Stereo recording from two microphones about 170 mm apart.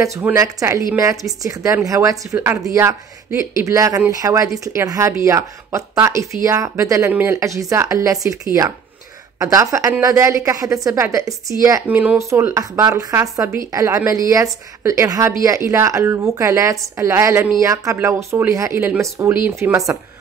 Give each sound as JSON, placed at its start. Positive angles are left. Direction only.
{"t": 0.0, "sound": "a woman's voice", "side_deg": -15}